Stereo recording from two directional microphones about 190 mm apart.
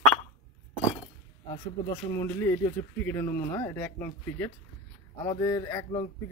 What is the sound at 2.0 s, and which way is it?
Speech, 15° left (ahead or behind).